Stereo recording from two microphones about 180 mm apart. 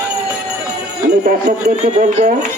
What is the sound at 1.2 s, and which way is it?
Speech, 40° right (ahead or behind).